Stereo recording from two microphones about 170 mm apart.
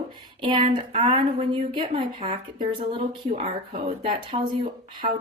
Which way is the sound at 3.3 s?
40° right (ahead or behind).